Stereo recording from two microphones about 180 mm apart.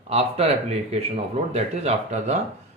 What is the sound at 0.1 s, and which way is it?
Speech, 35° right (ahead or behind).